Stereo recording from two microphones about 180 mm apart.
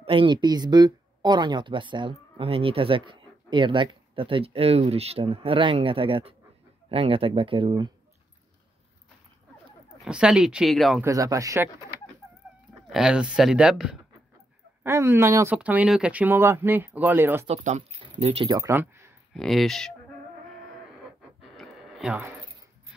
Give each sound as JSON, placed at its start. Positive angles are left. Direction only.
{"t": 0.0, "sound": "speech", "side_deg": -30}
{"t": 10.0, "sound": "speech", "side_deg": -5}
{"t": 11.0, "sound": "speech", "side_deg": -20}
{"t": 12.2, "sound": "chicken", "side_deg": 0}
{"t": 12.9, "sound": "speech", "side_deg": -5}
{"t": 17.5, "sound": "speech", "side_deg": -40}
{"t": 18.5, "sound": "speech", "side_deg": -15}
{"t": 19.3, "sound": "speech", "side_deg": 0}
{"t": 21.4, "sound": "a sound", "side_deg": 0}